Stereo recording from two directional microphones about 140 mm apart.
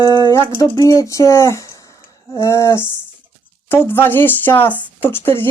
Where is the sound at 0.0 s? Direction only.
25° left (ahead or behind).